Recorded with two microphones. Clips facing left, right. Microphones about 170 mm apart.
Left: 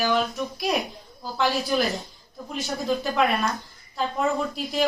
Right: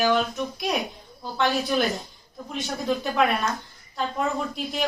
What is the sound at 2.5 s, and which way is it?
A woman's voice, centre (ahead or behind).